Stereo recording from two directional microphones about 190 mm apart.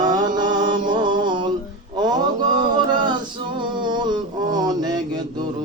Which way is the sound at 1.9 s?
20° right (ahead or behind).